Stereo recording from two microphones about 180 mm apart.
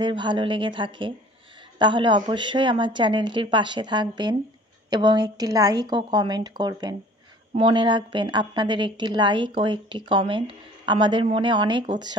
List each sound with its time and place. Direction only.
0.0 s a woman's voice: 25° right (ahead or behind)